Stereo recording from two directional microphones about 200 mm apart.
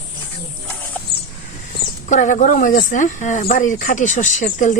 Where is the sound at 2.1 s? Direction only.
40° left (ahead or behind).